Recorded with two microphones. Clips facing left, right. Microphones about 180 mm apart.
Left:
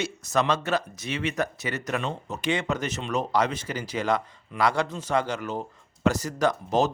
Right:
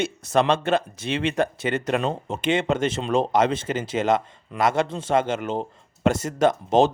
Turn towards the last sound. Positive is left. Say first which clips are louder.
# right 5 dB
turn(degrees=-25)  # may be behind; listen again after turning